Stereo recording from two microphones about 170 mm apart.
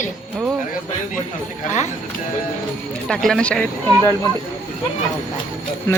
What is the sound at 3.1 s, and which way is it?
Speech, 5° left (ahead or behind).